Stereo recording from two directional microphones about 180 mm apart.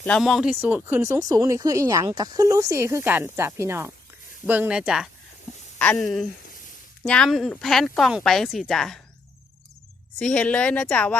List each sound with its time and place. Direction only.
0.0 s speech: 5° left (ahead or behind)
10.2 s speech: 5° left (ahead or behind)